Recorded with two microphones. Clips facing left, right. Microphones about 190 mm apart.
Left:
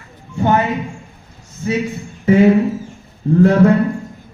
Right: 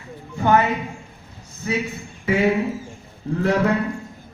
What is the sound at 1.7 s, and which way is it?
Speech, 45° left (ahead or behind).